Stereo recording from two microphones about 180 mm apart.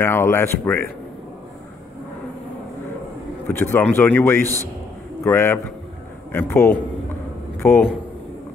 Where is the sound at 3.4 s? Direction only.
15° left (ahead or behind).